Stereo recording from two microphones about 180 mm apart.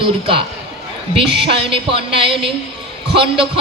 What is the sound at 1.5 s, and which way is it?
A man's voice, 30° right (ahead or behind).